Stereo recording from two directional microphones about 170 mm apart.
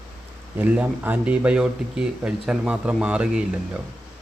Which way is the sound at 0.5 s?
10° right (ahead or behind).